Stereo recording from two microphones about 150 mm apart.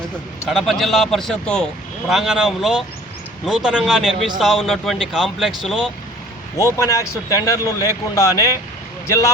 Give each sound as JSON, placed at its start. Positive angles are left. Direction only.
{"t": 0.4, "sound": "speech", "side_deg": 0}
{"t": 6.6, "sound": "speech", "side_deg": 20}